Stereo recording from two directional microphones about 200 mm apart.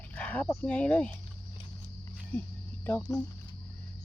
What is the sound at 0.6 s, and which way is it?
Speech, 5° left (ahead or behind).